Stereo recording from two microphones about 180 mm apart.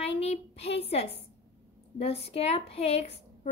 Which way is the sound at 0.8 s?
35° left (ahead or behind).